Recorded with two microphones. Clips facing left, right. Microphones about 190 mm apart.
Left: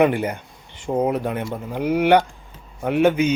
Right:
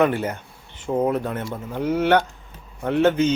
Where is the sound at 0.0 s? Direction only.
15° left (ahead or behind).